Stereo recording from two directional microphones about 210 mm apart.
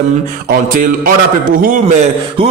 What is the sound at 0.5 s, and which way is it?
Speech, 40° right (ahead or behind).